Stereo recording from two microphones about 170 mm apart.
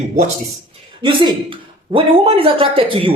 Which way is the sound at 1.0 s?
30° right (ahead or behind).